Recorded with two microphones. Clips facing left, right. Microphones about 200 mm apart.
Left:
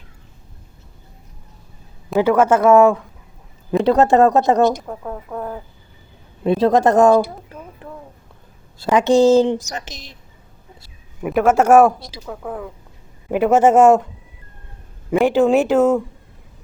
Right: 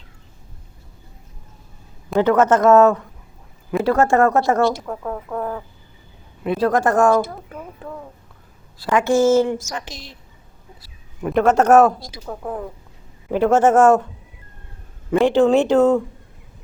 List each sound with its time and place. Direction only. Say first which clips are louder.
2.0 s a man's voice: left 1 dB; 5° left (ahead or behind)
8.8 s speech: left 3 dB; 20° left (ahead or behind)
11.2 s a man's voice: left 1 dB; 5° left (ahead or behind)
13.3 s a man's voice: left 1 dB; 10° left (ahead or behind)
15.2 s a man's voice: even; 10° left (ahead or behind)